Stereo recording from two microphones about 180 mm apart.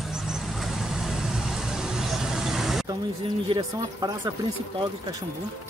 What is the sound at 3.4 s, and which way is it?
Speech, 25° right (ahead or behind).